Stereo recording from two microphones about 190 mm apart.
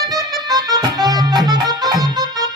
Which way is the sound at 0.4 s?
20° right (ahead or behind).